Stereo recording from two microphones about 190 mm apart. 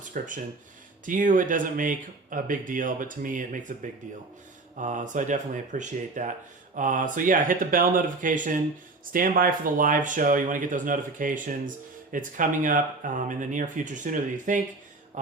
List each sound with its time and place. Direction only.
0.0 s speech: 45° right (ahead or behind)
4.8 s speech: 40° right (ahead or behind)